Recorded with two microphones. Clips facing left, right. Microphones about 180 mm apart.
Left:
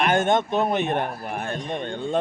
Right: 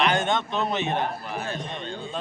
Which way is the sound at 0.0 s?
50° left (ahead or behind).